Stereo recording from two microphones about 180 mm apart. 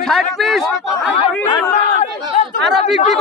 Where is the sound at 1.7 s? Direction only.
40° left (ahead or behind).